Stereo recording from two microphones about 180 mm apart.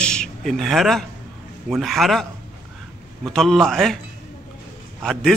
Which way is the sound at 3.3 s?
Centre (ahead or behind).